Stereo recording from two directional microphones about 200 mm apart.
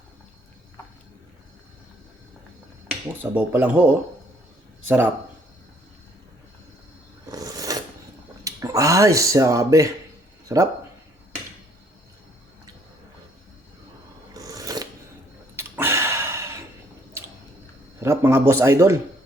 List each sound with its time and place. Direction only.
3.3 s speech: 10° right (ahead or behind)
4.9 s speech: 10° right (ahead or behind)
7.3 s a sound: 20° right (ahead or behind)
8.4 s speech: 15° right (ahead or behind)
14.3 s filing: 15° right (ahead or behind)
15.5 s a sound: 10° right (ahead or behind)
18.0 s speech: 15° right (ahead or behind)